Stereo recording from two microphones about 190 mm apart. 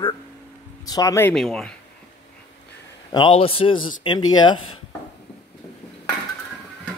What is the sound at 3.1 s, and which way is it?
A man's voice, 25° left (ahead or behind).